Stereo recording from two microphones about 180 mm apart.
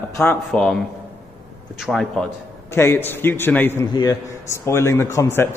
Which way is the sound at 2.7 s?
15° left (ahead or behind).